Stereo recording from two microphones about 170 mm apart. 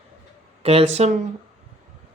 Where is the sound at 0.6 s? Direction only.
35° right (ahead or behind).